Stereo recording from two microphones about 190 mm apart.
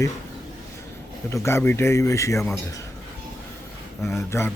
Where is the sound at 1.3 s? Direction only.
15° left (ahead or behind).